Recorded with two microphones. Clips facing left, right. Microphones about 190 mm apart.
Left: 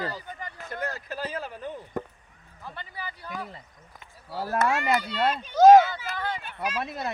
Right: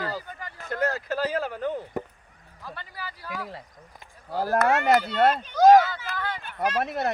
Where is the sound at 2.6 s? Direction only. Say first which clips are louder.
Even; 20° left (ahead or behind).